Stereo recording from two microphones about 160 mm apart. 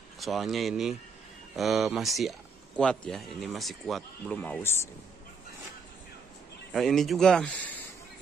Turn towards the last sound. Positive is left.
turn(degrees=5)  # may be behind; listen again after turning